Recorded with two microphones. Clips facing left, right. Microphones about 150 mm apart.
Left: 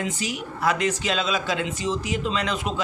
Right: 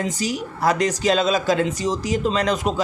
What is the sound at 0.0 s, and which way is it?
A man's voice, 40° right (ahead or behind).